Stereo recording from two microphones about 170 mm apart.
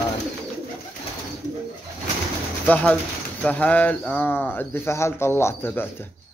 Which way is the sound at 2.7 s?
10° left (ahead or behind).